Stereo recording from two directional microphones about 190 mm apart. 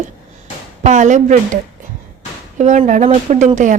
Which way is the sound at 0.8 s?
40° right (ahead or behind).